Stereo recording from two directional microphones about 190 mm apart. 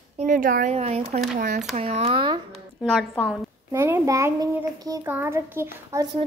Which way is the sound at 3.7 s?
15° right (ahead or behind).